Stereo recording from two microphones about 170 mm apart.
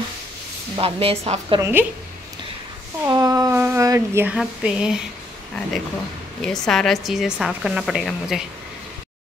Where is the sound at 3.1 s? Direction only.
20° right (ahead or behind); by 4.9 s 5° right (ahead or behind).